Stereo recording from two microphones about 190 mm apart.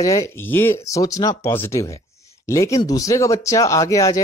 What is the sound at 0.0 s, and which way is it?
Speech, 15° left (ahead or behind).